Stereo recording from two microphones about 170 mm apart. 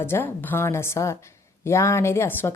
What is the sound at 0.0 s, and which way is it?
A woman's voice, 15° left (ahead or behind).